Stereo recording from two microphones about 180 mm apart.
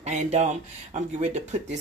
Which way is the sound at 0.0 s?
40° right (ahead or behind).